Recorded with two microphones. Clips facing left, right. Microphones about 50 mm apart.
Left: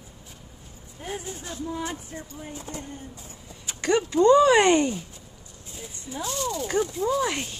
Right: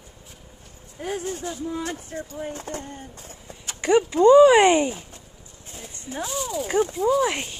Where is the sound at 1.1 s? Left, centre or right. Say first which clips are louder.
Right 6 dB; right.